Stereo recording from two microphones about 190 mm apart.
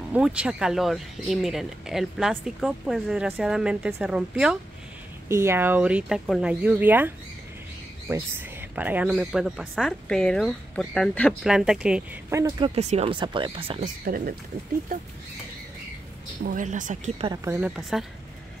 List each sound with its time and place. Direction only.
0.1 s speech: 5° right (ahead or behind)
8.1 s speech: 10° right (ahead or behind)
12.3 s speech: 15° right (ahead or behind)
14.0 s speech: 50° right (ahead or behind)
16.4 s speech: 45° right (ahead or behind)
17.5 s speech: 5° right (ahead or behind)